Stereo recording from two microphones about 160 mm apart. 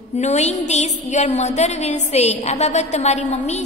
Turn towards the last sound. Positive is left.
turn(degrees=45)  # may be behind; listen again after turning